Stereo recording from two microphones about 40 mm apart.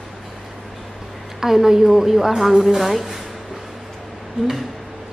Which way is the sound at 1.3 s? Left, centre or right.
Centre.